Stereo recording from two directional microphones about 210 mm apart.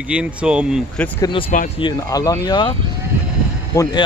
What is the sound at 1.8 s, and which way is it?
Speech, 15° left (ahead or behind).